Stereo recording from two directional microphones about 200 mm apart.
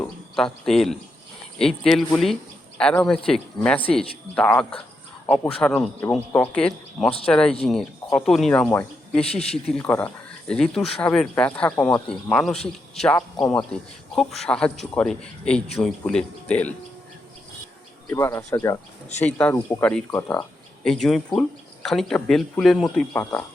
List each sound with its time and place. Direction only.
0.3 s speech: centre (ahead or behind)
9.2 s speech: 30° left (ahead or behind)
9.7 s speech: 5° left (ahead or behind)
18.1 s speech: 15° left (ahead or behind)